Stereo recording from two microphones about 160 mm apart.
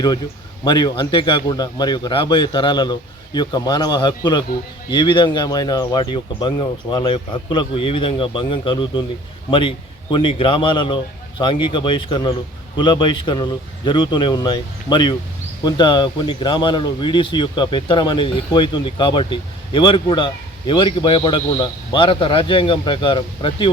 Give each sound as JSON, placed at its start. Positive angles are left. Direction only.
{"t": 0.6, "sound": "a man's voice", "side_deg": 25}